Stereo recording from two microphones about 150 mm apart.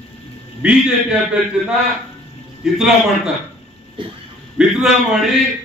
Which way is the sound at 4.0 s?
35° right (ahead or behind).